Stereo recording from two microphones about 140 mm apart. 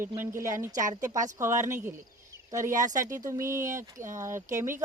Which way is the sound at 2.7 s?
65° right (ahead or behind).